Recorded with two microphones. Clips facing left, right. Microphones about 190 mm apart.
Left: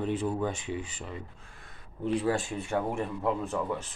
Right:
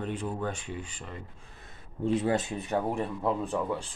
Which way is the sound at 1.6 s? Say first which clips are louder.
Right 2 dB; 25° right (ahead or behind).